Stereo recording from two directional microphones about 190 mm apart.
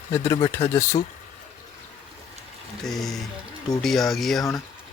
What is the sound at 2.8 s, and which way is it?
Speech, centre (ahead or behind).